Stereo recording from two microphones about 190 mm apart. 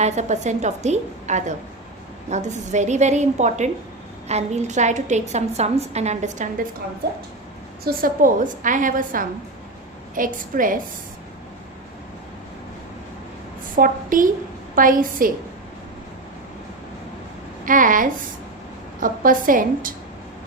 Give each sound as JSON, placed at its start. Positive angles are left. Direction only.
{"t": 0.0, "sound": "a woman's voice", "side_deg": -40}
{"t": 7.9, "sound": "a woman's voice", "side_deg": -45}
{"t": 13.7, "sound": "a woman's voice", "side_deg": -45}
{"t": 17.7, "sound": "a woman's voice", "side_deg": -45}